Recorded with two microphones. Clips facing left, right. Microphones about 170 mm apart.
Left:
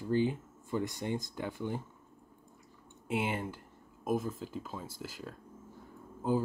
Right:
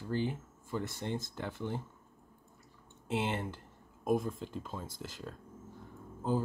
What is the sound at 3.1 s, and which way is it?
Speech, 10° left (ahead or behind).